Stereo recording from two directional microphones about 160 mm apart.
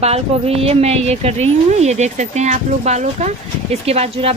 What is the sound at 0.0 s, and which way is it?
A woman's voice, 40° right (ahead or behind).